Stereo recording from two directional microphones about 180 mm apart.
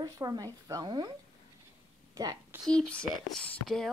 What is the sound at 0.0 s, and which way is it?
A woman's voice, 20° right (ahead or behind).